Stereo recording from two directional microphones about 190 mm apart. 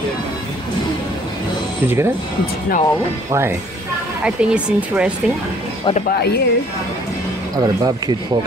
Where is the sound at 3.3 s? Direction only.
15° right (ahead or behind).